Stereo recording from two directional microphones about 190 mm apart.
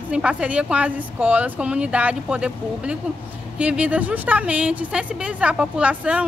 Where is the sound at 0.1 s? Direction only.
5° right (ahead or behind).